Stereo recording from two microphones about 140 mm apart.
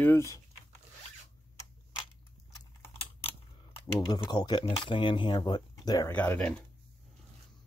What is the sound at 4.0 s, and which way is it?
Speech, 35° left (ahead or behind).